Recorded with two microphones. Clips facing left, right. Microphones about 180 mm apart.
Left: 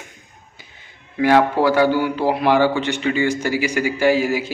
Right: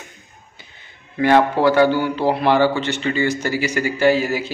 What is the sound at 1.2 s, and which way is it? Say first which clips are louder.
A man's voice: even; 5° left (ahead or behind).